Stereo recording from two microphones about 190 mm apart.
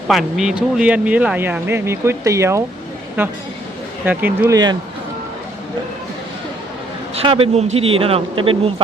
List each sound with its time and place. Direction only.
0.1 s speech: centre (ahead or behind); by 4.8 s 20° right (ahead or behind)
7.2 s speech: 30° right (ahead or behind)